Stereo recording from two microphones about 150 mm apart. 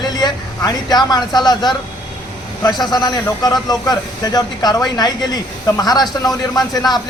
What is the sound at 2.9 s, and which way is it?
A man's voice, 25° left (ahead or behind).